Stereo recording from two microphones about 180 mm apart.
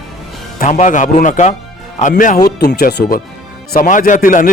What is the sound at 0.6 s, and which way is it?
Speech, 45° left (ahead or behind).